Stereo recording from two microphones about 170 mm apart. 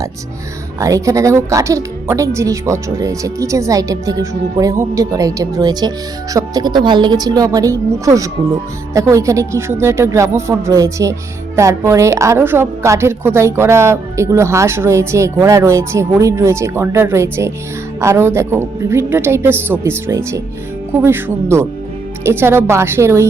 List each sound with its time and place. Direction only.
0.8 s a woman's voice: 20° right (ahead or behind)